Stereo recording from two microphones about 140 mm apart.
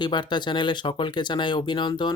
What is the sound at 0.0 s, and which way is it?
Speech, 35° left (ahead or behind).